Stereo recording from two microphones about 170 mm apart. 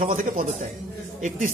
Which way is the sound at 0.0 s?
50° right (ahead or behind).